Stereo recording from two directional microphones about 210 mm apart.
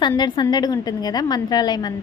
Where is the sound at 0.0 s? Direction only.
20° left (ahead or behind).